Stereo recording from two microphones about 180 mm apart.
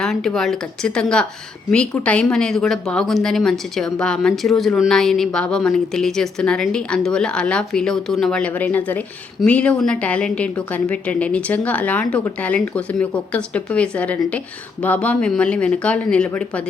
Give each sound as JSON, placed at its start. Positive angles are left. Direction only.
{"t": 0.0, "sound": "a woman's voice", "side_deg": 0}